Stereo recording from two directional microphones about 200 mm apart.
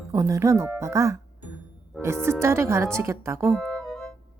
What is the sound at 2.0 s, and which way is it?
Speech, 10° right (ahead or behind).